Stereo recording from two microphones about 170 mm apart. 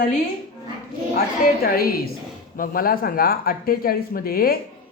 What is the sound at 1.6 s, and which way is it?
Speech, 60° left (ahead or behind).